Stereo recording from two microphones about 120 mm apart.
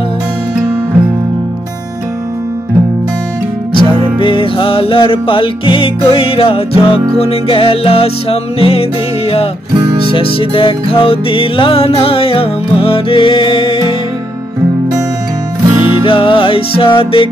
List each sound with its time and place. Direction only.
3.7 s music: 45° left (ahead or behind)
10.1 s music: 50° left (ahead or behind)
15.7 s music: 20° right (ahead or behind)
16.0 s music: 45° left (ahead or behind)